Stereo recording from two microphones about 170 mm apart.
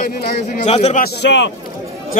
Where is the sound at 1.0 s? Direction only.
85° left.